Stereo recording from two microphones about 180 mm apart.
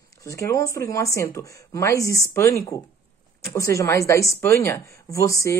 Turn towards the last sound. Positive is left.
turn(degrees=15)  # may be behind; listen again after turning